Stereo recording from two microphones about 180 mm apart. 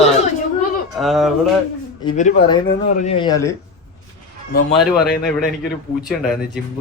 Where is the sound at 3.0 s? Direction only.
25° left (ahead or behind).